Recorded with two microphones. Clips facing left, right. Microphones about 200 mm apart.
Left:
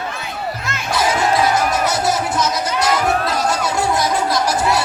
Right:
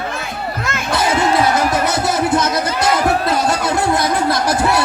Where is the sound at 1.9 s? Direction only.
60° right (ahead or behind).